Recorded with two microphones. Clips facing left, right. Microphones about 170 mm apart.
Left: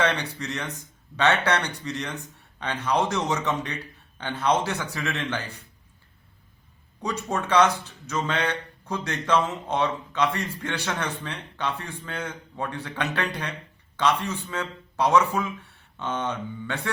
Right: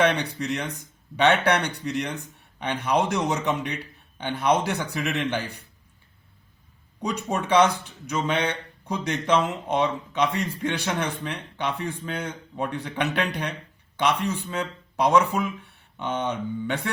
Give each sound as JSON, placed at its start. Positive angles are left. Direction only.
{"t": 0.0, "sound": "speech", "side_deg": -15}
{"t": 7.0, "sound": "speech", "side_deg": -15}